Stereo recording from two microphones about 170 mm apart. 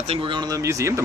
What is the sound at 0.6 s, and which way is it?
Speech, 15° right (ahead or behind).